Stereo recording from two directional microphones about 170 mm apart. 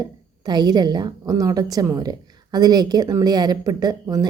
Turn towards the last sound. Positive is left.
turn(degrees=-25)  # may be behind; listen again after turning